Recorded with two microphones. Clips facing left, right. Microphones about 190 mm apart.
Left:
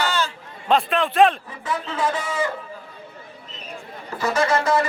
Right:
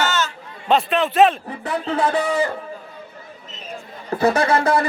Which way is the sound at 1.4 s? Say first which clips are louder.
Right 4 dB; 60° right (ahead or behind).